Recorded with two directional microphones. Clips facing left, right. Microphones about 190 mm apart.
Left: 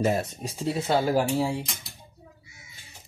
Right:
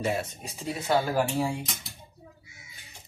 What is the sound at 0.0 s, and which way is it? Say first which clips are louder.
Speech: left 4 dB; 40° left (ahead or behind).